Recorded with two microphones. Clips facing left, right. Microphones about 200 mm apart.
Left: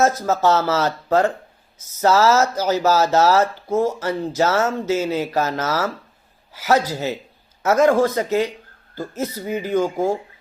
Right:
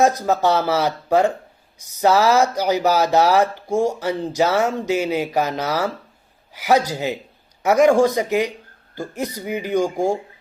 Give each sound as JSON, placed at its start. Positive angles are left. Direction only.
{"t": 0.0, "sound": "speech", "side_deg": -15}